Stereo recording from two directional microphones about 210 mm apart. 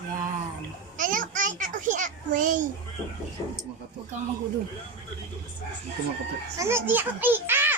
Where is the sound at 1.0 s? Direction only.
40° right (ahead or behind).